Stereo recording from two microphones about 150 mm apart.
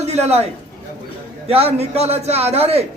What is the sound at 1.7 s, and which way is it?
A man's voice, 45° right (ahead or behind).